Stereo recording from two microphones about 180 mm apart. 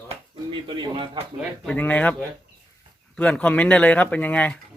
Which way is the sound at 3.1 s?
5° left (ahead or behind).